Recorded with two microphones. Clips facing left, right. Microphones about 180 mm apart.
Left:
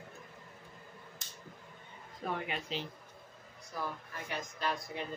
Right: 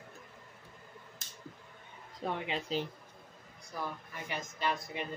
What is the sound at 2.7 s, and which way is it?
Speech, 40° right (ahead or behind).